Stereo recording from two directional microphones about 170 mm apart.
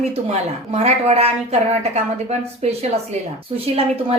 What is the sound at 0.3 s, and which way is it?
A woman's voice, 40° right (ahead or behind).